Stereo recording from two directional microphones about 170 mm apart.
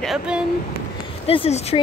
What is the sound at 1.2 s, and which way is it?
Speech, 35° left (ahead or behind).